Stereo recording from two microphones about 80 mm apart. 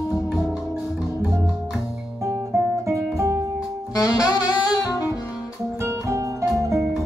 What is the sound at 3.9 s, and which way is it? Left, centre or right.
Saxophone, left.